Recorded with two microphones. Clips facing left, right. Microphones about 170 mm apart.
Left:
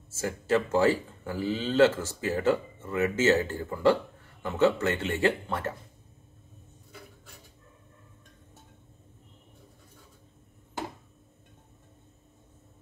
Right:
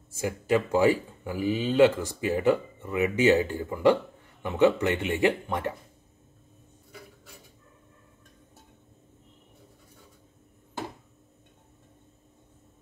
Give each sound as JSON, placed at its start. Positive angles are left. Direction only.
{"t": 0.1, "sound": "speech", "side_deg": -15}